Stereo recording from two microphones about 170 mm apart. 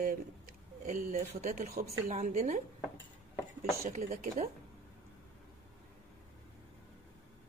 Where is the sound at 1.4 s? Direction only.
55° right (ahead or behind).